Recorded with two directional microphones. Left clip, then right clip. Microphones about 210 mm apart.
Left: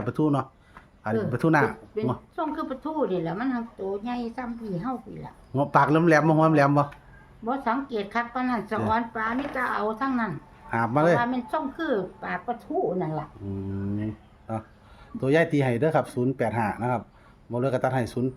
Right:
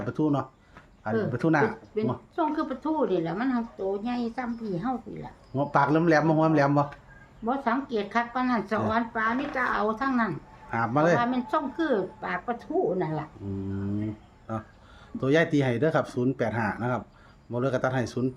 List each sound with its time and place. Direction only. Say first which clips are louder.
0.0 s speech: left 2 dB; 30° left (ahead or behind)
2.0 s speech: right 1 dB; 10° right (ahead or behind)
5.5 s speech: left 2 dB; 35° left (ahead or behind)
7.4 s speech: even; 5° right (ahead or behind)
10.7 s speech: left 2 dB; 20° left (ahead or behind)
11.2 s speech: even; 5° right (ahead or behind)
14.5 s speech: left 2 dB; 15° left (ahead or behind)